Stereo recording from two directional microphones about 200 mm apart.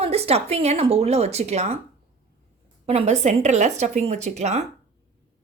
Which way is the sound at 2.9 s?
30° right (ahead or behind).